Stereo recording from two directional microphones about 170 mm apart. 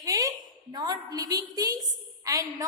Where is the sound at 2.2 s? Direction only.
20° right (ahead or behind).